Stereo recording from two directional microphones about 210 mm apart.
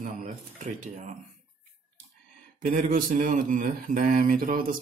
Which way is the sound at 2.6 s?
40° right (ahead or behind).